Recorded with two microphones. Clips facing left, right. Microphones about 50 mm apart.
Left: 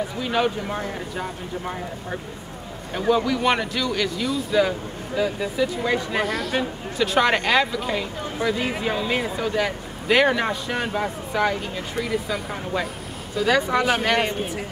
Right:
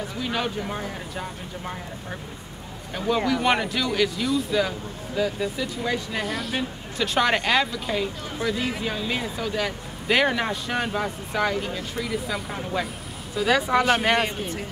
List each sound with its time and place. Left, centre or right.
0.2 s speech: centre
3.3 s speech: centre
6.2 s speech: centre
10.0 s speech: centre